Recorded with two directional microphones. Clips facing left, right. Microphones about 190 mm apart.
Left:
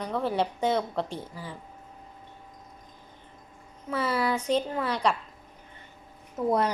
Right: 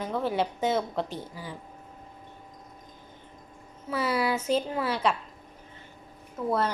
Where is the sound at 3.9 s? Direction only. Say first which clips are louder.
Even; 5° right (ahead or behind).